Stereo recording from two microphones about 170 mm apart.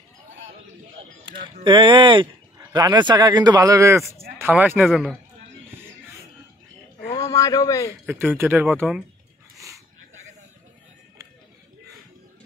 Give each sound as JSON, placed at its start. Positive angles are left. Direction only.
{"t": 1.2, "sound": "speech", "side_deg": -30}
{"t": 7.2, "sound": "a man's voice", "side_deg": 20}
{"t": 8.1, "sound": "speech", "side_deg": -10}